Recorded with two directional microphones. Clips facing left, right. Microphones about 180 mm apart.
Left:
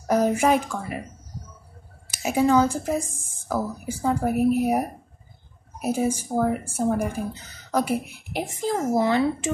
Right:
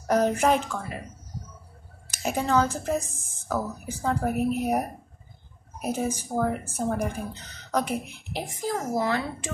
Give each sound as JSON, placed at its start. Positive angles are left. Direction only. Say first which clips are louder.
{"t": 0.1, "sound": "speech", "louder": "left 2 dB", "side_deg": 10}
{"t": 2.0, "sound": "speech", "louder": "left 6 dB", "side_deg": 10}